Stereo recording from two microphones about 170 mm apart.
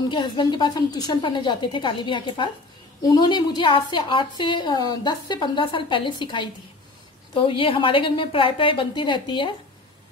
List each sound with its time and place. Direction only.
0.1 s a woman's voice: 25° left (ahead or behind)